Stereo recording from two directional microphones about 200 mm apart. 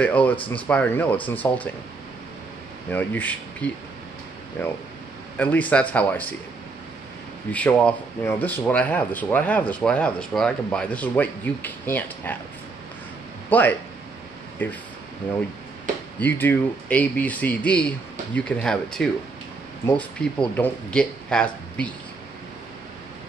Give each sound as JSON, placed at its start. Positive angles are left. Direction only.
{"t": 0.0, "sound": "speech", "side_deg": 5}
{"t": 2.9, "sound": "speech", "side_deg": 10}
{"t": 7.5, "sound": "speech", "side_deg": 5}
{"t": 13.5, "sound": "speech", "side_deg": 10}